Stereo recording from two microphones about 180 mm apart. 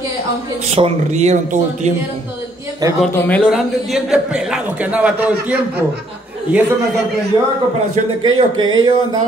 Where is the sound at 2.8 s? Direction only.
20° right (ahead or behind).